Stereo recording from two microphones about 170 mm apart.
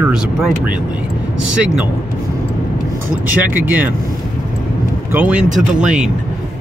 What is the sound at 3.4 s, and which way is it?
Speech, 10° right (ahead or behind).